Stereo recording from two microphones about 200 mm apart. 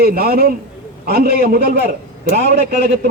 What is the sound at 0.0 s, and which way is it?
A man's voice, 50° right (ahead or behind).